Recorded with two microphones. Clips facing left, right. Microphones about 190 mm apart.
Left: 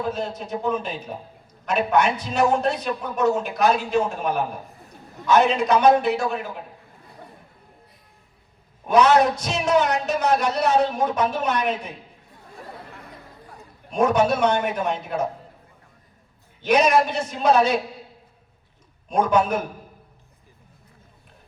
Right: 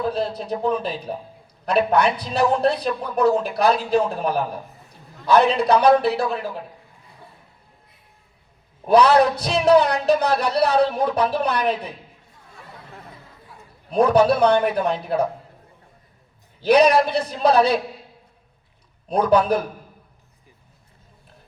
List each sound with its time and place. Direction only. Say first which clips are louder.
0.1 s speech: right 3 dB; 35° right (ahead or behind)
8.9 s speech: right 2 dB; 35° right (ahead or behind)
13.9 s speech: right 3 dB; 35° right (ahead or behind)
16.6 s speech: right 3 dB; 35° right (ahead or behind)
19.0 s speech: right 3 dB; 35° right (ahead or behind)